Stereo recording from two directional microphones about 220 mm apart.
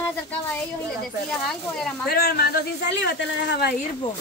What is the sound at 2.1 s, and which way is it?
Speech, 45° left (ahead or behind).